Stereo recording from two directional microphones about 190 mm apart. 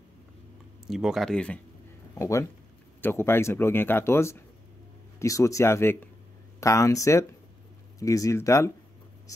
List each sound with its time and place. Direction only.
0.8 s speech: centre (ahead or behind)
2.1 s speech: 15° left (ahead or behind)